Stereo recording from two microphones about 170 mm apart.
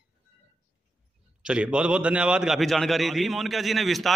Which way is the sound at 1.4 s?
5° right (ahead or behind).